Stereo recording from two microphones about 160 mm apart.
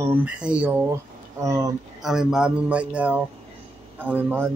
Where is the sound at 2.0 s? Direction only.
5° right (ahead or behind).